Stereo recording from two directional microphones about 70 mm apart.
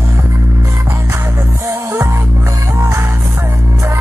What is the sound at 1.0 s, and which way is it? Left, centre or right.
Music, right.